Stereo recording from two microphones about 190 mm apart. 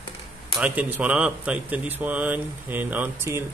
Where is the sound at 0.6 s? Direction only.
10° right (ahead or behind).